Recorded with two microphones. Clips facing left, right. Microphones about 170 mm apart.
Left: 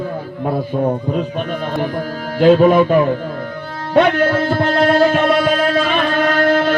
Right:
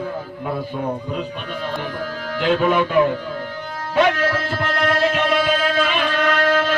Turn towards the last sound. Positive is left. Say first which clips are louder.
# left 4 dB
turn(degrees=50)  # may be behind; listen again after turning